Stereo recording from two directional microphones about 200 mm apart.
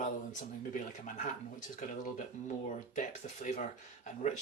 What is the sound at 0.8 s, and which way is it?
Speech, 40° left (ahead or behind).